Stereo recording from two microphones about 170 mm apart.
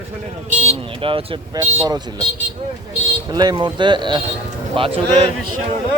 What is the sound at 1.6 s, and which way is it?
Speech, 20° right (ahead or behind).